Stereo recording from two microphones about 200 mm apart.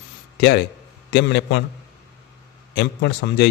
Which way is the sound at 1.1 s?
60° left (ahead or behind).